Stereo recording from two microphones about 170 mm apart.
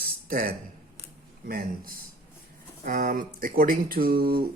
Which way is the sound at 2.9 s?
55° right (ahead or behind).